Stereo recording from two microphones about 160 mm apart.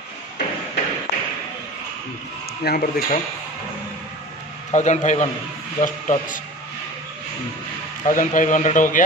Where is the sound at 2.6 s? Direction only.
75° left (ahead or behind).